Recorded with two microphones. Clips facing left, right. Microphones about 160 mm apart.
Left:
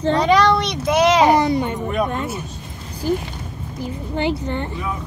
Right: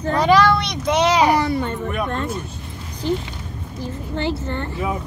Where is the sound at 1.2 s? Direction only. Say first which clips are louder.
Left 2 dB; 20° left (ahead or behind).